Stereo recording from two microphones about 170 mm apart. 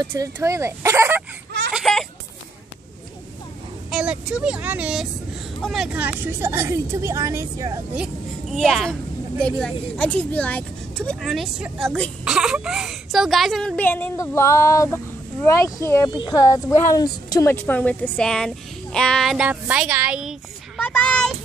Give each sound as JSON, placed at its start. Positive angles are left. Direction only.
{"t": 0.0, "sound": "speech", "side_deg": -20}
{"t": 1.7, "sound": "a sound", "side_deg": 0}
{"t": 3.9, "sound": "speech", "side_deg": -5}
{"t": 7.9, "sound": "speech", "side_deg": -5}